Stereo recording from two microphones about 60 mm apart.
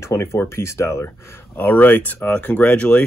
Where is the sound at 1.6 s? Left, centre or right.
Left.